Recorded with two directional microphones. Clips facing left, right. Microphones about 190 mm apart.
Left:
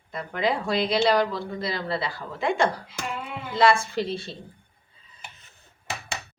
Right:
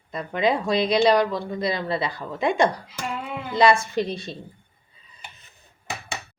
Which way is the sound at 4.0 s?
20° right (ahead or behind).